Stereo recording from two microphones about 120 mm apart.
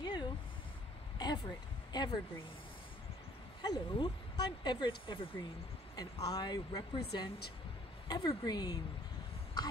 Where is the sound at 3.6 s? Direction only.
35° left (ahead or behind).